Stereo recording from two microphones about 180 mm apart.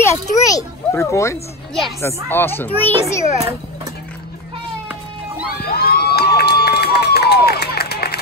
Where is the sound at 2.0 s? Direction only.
15° left (ahead or behind).